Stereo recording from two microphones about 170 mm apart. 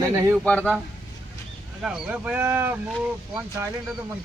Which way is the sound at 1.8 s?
5° right (ahead or behind).